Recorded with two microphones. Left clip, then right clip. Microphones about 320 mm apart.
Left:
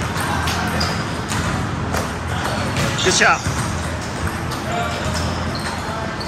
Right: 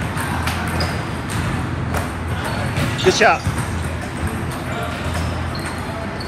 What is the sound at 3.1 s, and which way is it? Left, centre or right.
Speech, centre.